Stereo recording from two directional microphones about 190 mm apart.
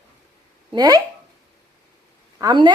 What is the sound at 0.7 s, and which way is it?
Speech, 20° right (ahead or behind).